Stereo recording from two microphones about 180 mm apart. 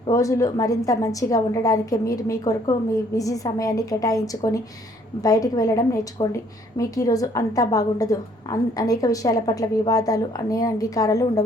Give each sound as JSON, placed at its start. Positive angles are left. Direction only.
{"t": 0.1, "sound": "a woman's voice", "side_deg": 20}